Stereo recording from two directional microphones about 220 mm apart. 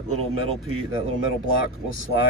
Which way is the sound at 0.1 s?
80° right.